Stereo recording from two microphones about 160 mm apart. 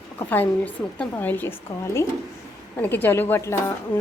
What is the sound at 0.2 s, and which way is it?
A woman's voice, 10° left (ahead or behind).